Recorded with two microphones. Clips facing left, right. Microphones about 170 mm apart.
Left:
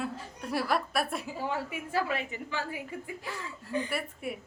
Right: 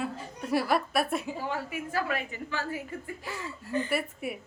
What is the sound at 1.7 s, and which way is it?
A woman's voice, 25° left (ahead or behind).